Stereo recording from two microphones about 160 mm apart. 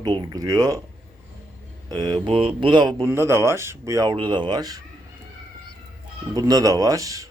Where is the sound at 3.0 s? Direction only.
15° right (ahead or behind).